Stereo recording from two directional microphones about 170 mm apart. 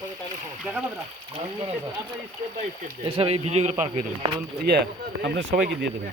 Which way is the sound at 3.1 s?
35° right (ahead or behind).